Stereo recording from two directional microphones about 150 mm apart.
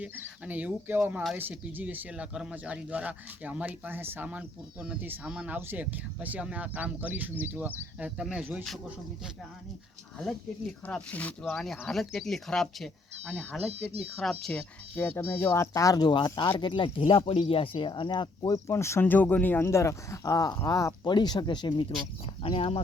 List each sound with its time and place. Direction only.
0.0 s speech: 10° right (ahead or behind)
10.8 s speech: 10° left (ahead or behind)
13.7 s speech: 45° right (ahead or behind)
14.4 s speech: 10° left (ahead or behind); by 22.8 s 40° left (ahead or behind)